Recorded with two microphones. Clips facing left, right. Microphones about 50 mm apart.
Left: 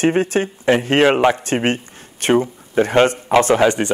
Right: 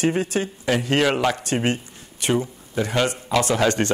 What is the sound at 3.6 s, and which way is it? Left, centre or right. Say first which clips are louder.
Speech: left 4 dB; centre.